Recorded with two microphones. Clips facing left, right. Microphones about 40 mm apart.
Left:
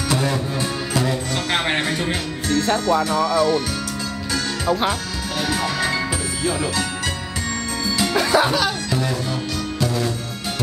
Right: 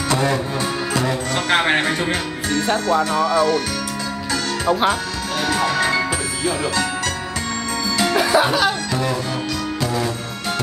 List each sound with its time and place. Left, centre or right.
0.1 s music: centre
2.6 s speech: centre
4.6 s speech: centre
5.5 s music: centre
8.0 s music: centre